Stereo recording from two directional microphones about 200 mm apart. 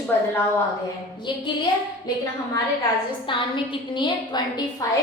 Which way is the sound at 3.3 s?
25° left (ahead or behind).